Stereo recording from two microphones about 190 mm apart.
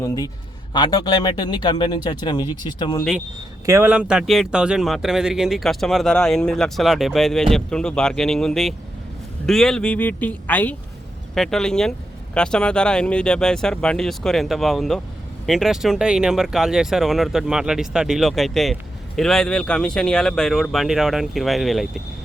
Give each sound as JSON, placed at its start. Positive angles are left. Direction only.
{"t": 0.7, "sound": "speech", "side_deg": 20}
{"t": 3.7, "sound": "speech", "side_deg": -10}